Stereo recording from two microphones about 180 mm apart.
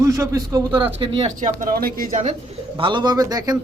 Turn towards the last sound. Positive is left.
turn(degrees=-20)  # may be behind; listen again after turning